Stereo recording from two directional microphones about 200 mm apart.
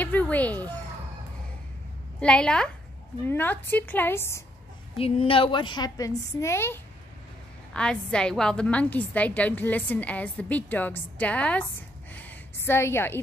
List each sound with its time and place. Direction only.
0.0 s chicken: 10° left (ahead or behind)
2.1 s a woman's voice: 5° left (ahead or behind)
4.9 s a woman's voice: 30° left (ahead or behind); by 13.2 s 10° left (ahead or behind)